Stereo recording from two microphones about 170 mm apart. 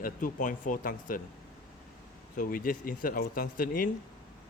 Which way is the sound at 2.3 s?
55° left (ahead or behind).